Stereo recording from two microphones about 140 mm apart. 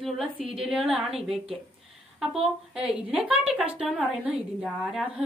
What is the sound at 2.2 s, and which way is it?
A woman's voice, 5° right (ahead or behind).